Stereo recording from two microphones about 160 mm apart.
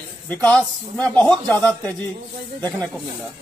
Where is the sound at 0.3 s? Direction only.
5° left (ahead or behind).